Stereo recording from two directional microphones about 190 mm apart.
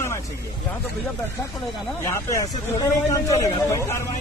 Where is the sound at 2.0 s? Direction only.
15° left (ahead or behind).